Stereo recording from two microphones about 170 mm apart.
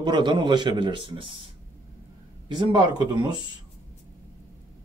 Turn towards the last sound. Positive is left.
turn(degrees=-25)  # may be behind; listen again after turning